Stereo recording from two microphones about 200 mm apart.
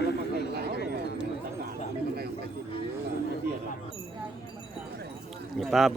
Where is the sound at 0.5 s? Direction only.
55° right (ahead or behind).